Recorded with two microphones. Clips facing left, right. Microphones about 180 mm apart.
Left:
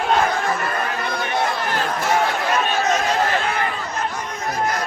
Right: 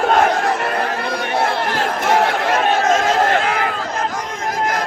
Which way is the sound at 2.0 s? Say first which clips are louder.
Right 5 dB; 60° right (ahead or behind).